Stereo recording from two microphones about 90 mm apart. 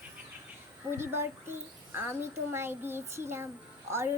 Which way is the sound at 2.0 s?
25° right (ahead or behind).